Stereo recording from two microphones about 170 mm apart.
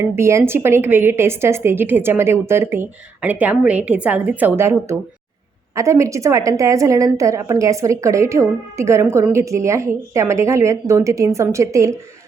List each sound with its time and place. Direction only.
0.0 s a woman's voice: 15° right (ahead or behind)